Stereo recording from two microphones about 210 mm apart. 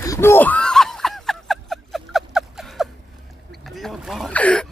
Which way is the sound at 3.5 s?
Centre (ahead or behind).